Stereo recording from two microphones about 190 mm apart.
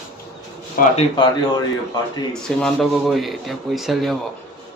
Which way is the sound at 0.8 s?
45° left (ahead or behind).